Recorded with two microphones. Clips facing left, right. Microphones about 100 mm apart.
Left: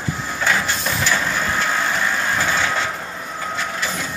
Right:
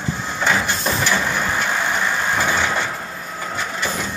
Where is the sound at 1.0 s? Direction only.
15° right (ahead or behind).